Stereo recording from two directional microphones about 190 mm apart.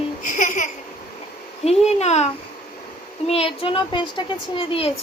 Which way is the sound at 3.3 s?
30° left (ahead or behind).